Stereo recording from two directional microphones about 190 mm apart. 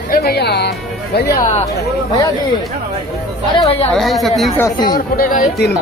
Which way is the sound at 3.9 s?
Centre (ahead or behind).